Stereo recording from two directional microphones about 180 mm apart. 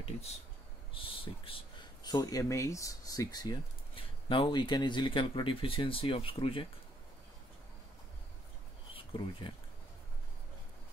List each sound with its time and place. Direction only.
0.0 s a sound: 35° left (ahead or behind)
2.0 s speech: 20° left (ahead or behind)
8.9 s speech: 30° left (ahead or behind)